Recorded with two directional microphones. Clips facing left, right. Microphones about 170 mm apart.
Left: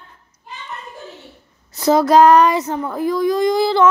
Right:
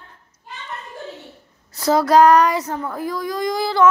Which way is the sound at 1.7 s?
20° left (ahead or behind).